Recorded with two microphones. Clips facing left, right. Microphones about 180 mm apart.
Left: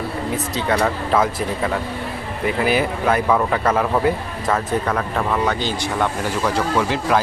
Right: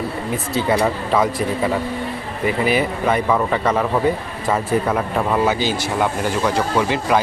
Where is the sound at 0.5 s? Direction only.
5° right (ahead or behind).